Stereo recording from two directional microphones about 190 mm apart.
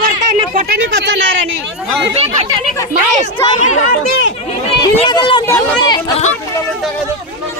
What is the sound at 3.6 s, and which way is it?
Speech, 40° left (ahead or behind).